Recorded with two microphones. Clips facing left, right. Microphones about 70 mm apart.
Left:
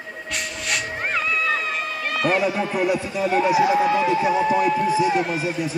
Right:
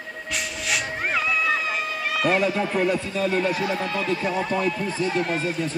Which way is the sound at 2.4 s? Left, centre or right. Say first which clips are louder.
Left 1 dB; centre.